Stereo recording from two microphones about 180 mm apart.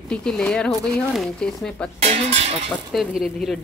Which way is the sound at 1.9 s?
35° right (ahead or behind).